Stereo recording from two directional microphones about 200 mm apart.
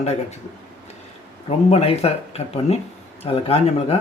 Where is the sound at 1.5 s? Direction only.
30° left (ahead or behind).